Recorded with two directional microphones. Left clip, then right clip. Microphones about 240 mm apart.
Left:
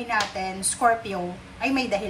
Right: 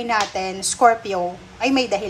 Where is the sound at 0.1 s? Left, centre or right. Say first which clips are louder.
Right 4 dB; centre.